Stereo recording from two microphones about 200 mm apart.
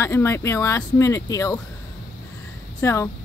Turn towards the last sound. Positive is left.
turn(degrees=15)  # may be behind; listen again after turning